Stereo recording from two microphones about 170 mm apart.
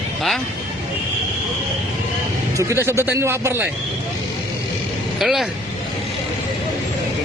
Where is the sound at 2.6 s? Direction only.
15° right (ahead or behind).